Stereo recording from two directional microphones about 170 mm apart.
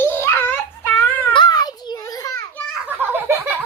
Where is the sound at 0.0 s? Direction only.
15° left (ahead or behind).